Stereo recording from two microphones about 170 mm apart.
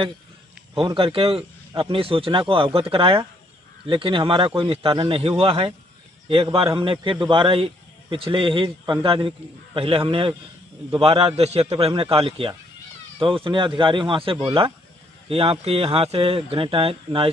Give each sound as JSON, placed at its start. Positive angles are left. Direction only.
{"t": 0.7, "sound": "a man's voice", "side_deg": -30}